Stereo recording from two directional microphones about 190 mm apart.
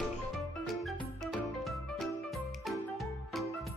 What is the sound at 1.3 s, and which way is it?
Music, centre (ahead or behind).